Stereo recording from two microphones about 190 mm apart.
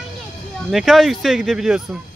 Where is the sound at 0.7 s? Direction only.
Centre (ahead or behind).